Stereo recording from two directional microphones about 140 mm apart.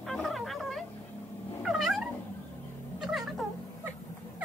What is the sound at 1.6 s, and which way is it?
Cat, centre (ahead or behind).